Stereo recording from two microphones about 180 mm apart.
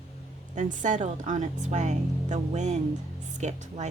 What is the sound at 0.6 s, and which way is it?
A woman's voice, 45° right (ahead or behind).